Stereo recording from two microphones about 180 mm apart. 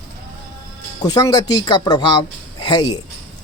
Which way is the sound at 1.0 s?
20° left (ahead or behind).